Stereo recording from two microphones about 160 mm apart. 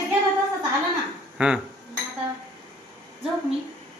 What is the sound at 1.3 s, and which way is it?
Speech, 5° right (ahead or behind).